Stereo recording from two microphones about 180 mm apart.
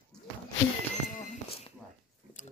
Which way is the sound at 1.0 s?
45° left (ahead or behind).